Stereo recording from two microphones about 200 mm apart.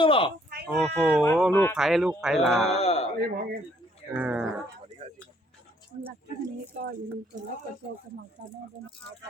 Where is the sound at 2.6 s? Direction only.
30° left (ahead or behind).